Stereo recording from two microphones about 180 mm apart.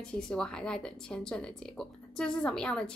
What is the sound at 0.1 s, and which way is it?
Speech, 5° left (ahead or behind).